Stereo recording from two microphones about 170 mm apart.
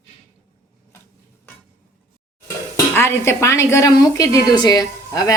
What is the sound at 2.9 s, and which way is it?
A woman's voice, 15° left (ahead or behind).